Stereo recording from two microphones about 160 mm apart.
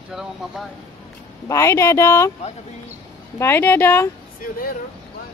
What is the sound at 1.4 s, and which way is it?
Speech, 20° left (ahead or behind).